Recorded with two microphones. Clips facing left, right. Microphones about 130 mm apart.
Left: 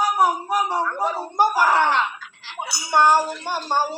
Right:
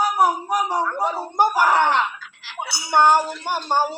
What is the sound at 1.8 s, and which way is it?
Speech, 20° right (ahead or behind).